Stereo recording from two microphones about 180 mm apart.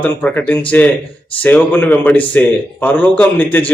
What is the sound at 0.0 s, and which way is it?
A man's voice, 10° left (ahead or behind).